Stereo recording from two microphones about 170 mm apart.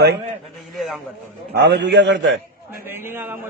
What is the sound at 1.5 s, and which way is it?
Speech, 80° right.